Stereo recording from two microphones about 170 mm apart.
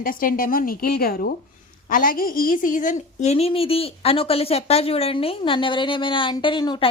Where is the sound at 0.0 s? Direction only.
55° left (ahead or behind).